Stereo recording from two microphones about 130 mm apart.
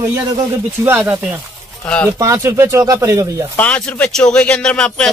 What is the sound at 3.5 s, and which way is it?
A man's voice, 10° left (ahead or behind).